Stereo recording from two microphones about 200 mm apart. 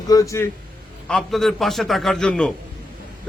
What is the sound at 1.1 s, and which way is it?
A man's voice, centre (ahead or behind).